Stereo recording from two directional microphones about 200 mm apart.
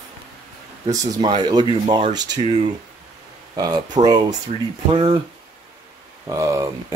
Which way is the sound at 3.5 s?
20° right (ahead or behind).